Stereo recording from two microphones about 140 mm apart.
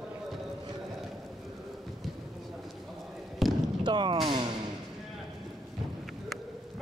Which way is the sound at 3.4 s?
Centre (ahead or behind).